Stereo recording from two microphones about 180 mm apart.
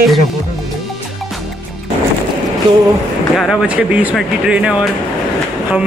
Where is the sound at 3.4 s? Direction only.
5° right (ahead or behind).